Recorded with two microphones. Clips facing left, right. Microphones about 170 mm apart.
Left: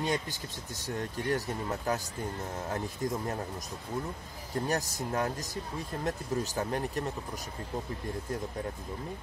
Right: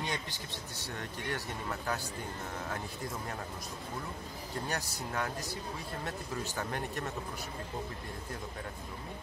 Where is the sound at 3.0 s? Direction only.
45° left (ahead or behind).